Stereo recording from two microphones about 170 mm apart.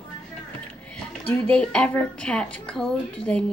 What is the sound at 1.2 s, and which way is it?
A woman's voice, 5° left (ahead or behind).